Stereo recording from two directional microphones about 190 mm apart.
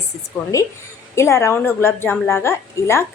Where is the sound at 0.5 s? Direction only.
15° left (ahead or behind).